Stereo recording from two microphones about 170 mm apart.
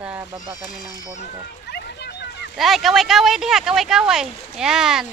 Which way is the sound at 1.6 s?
85° left.